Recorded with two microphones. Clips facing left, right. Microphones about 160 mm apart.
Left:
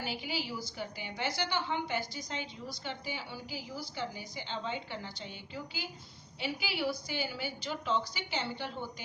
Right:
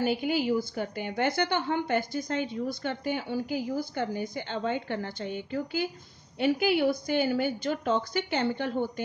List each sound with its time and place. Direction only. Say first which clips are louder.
0.0 s a woman's voice: right 11 dB; 55° right (ahead or behind)